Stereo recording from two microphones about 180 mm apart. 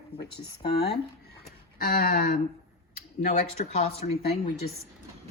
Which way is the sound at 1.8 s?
55° left (ahead or behind).